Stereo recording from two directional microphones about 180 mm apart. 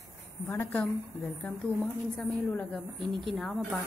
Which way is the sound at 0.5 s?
10° left (ahead or behind).